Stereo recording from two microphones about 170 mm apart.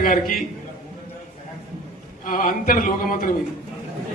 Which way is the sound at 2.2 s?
55° left (ahead or behind).